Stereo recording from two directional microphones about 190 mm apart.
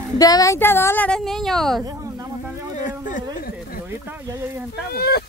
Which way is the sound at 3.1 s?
40° left (ahead or behind).